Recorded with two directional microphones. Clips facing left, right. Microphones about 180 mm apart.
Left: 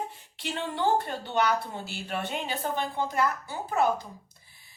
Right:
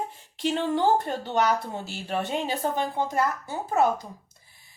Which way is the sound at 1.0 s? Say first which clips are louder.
Right 3 dB; 45° right (ahead or behind).